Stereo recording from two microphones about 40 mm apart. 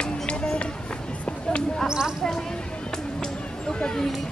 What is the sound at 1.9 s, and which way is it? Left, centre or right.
Speech, centre.